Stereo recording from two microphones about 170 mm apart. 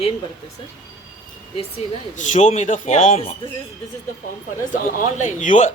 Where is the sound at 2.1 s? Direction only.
45° left (ahead or behind).